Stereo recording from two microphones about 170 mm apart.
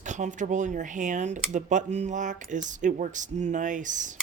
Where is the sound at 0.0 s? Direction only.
45° right (ahead or behind).